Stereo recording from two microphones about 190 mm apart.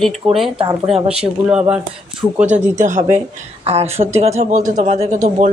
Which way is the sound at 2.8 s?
40° right (ahead or behind).